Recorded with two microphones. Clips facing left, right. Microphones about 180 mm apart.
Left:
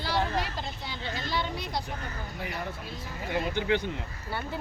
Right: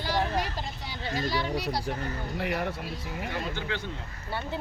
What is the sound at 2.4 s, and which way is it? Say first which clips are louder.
Speech: right 6 dB; 70° right (ahead or behind).